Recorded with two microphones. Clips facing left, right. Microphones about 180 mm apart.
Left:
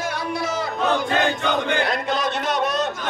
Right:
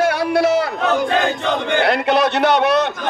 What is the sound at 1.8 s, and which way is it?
A man's voice, 70° right (ahead or behind).